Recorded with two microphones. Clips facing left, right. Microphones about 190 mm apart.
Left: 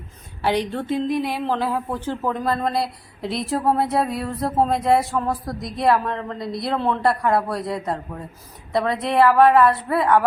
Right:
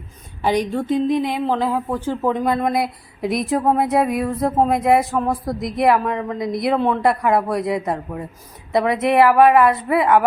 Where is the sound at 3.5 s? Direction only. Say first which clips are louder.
Right 3 dB; 5° right (ahead or behind).